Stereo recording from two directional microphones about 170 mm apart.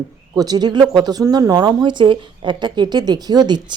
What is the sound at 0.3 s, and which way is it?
Speech, 20° right (ahead or behind).